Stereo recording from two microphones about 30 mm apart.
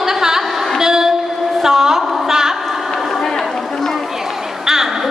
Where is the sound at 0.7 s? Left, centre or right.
Centre.